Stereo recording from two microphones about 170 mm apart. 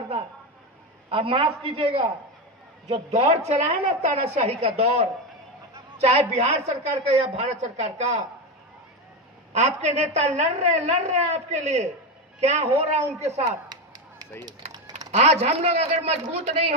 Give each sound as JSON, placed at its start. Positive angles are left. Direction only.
{"t": 1.1, "sound": "a woman's voice", "side_deg": -30}
{"t": 9.5, "sound": "a woman's voice", "side_deg": -40}
{"t": 13.7, "sound": "honk", "side_deg": -20}
{"t": 15.0, "sound": "a woman's voice", "side_deg": -40}